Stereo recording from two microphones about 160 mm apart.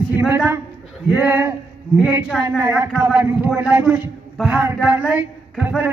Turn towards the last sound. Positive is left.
turn(degrees=-10)  # may be behind; listen again after turning